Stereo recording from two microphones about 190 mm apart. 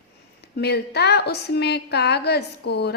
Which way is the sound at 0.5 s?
60° left (ahead or behind).